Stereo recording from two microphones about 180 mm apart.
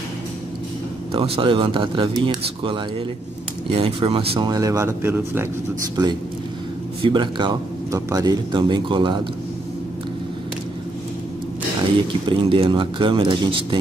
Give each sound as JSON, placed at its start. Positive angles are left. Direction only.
{"t": 1.1, "sound": "speech", "side_deg": -30}
{"t": 7.0, "sound": "speech", "side_deg": -25}
{"t": 12.3, "sound": "speech", "side_deg": -30}